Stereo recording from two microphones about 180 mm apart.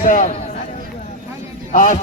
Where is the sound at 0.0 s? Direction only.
45° left (ahead or behind).